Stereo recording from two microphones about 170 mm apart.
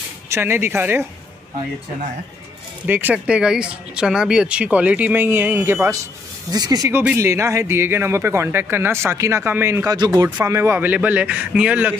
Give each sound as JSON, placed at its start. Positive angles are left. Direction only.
{"t": 0.3, "sound": "a man's voice", "side_deg": -15}
{"t": 2.9, "sound": "a man's voice", "side_deg": -10}